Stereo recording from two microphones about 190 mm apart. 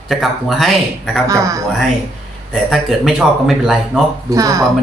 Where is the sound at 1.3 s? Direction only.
15° right (ahead or behind).